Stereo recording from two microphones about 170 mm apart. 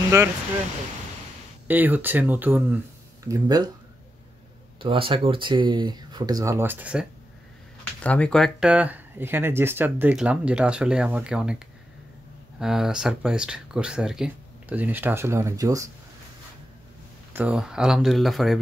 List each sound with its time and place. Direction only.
1.7 s speech: 10° right (ahead or behind)
3.3 s speech: 25° right (ahead or behind)
4.8 s speech: 30° right (ahead or behind); by 7.1 s 5° right (ahead or behind)
8.0 s speech: 5° left (ahead or behind)
12.5 s speech: 5° right (ahead or behind); by 15.9 s 20° right (ahead or behind)
17.3 s speech: 10° right (ahead or behind)